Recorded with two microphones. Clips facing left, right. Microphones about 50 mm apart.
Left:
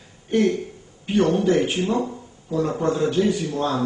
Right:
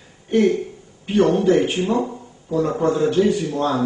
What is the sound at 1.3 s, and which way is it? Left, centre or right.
A man's voice, centre.